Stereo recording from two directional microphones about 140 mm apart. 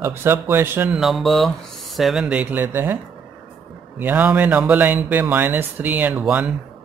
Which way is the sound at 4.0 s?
10° right (ahead or behind).